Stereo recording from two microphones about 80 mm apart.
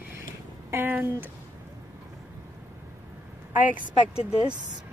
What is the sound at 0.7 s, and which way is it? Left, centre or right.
Speech, right.